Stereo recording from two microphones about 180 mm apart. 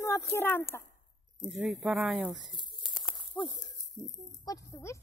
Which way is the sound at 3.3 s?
10° left (ahead or behind).